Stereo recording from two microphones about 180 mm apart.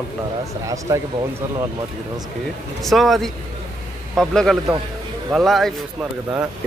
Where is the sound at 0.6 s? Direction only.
20° right (ahead or behind).